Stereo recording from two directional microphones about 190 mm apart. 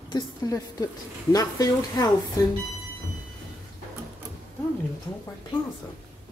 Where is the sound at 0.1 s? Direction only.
20° left (ahead or behind).